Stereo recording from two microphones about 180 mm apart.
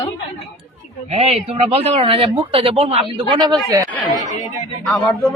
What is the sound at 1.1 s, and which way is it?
Speech, 35° right (ahead or behind).